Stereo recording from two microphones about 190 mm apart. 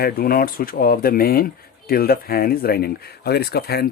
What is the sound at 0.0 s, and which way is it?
Speech, 50° left (ahead or behind).